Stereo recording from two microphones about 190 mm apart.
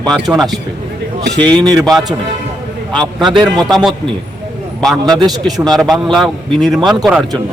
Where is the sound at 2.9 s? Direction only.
Centre (ahead or behind).